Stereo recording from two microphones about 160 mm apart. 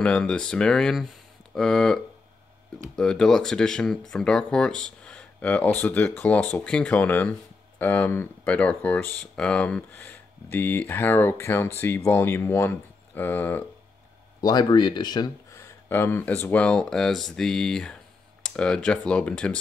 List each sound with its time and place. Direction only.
0.0 s speech: 5° left (ahead or behind)
3.0 s speech: 5° left (ahead or behind)
14.4 s speech: 25° left (ahead or behind)
15.9 s speech: 15° left (ahead or behind)